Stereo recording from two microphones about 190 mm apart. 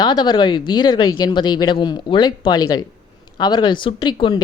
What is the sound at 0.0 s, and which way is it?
A woman's voice, 25° left (ahead or behind).